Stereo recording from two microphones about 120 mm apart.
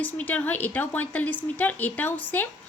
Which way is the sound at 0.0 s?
15° left (ahead or behind).